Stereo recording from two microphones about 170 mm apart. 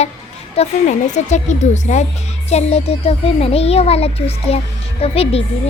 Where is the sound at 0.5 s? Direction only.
40° left (ahead or behind).